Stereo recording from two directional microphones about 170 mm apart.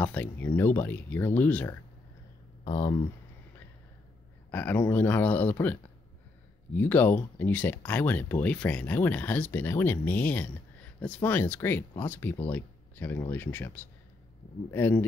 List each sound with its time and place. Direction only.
0.0 s speech: 10° left (ahead or behind)
2.6 s speech: 20° left (ahead or behind)
4.5 s speech: 10° left (ahead or behind)